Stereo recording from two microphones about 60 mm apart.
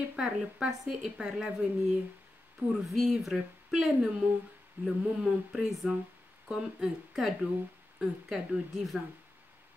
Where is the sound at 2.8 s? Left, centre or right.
Centre.